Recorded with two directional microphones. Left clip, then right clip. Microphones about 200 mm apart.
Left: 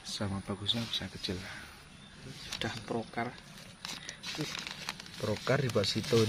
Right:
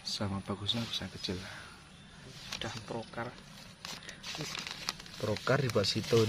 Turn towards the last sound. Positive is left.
turn(degrees=0)  # may be behind; listen again after turning